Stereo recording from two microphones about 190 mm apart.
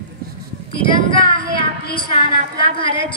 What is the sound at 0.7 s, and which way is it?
Speech, 25° left (ahead or behind).